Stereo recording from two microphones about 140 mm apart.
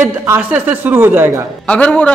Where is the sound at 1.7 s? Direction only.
10° left (ahead or behind).